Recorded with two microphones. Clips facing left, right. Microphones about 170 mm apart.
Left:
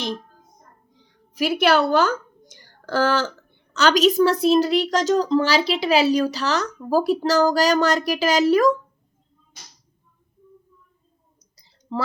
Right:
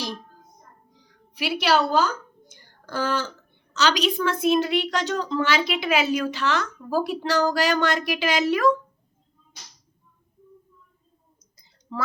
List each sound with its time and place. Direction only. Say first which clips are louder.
1.4 s a woman's voice: left 4 dB; 50° left (ahead or behind); by 3.3 s 90° left
3.8 s a woman's voice: left 6 dB; 50° left (ahead or behind)
11.5 s a sound: left 5 dB; 30° left (ahead or behind)